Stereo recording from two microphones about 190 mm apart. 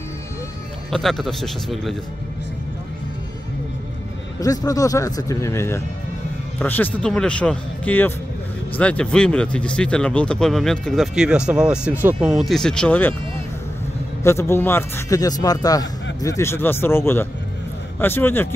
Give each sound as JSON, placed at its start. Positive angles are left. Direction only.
{"t": 0.8, "sound": "speech", "side_deg": 0}
{"t": 4.4, "sound": "a man's voice", "side_deg": 20}
{"t": 14.2, "sound": "a man's voice", "side_deg": 15}